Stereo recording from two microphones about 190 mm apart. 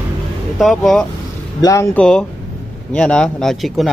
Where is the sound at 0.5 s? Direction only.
Centre (ahead or behind).